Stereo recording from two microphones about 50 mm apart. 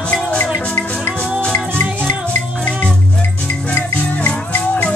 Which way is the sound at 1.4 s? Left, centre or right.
Left.